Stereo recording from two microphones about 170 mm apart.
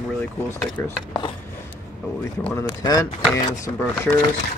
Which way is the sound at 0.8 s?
25° left (ahead or behind).